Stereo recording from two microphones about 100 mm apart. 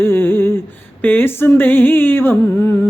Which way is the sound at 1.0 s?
20° left (ahead or behind).